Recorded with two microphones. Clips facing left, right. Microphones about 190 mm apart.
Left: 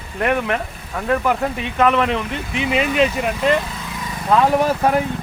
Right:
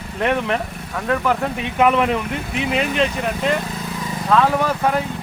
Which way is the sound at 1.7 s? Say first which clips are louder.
Right 1 dB; 10° right (ahead or behind).